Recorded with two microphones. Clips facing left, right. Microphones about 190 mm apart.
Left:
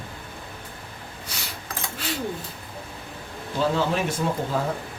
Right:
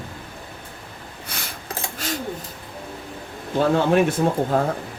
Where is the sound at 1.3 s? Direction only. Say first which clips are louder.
Right 4 dB; 55° right (ahead or behind).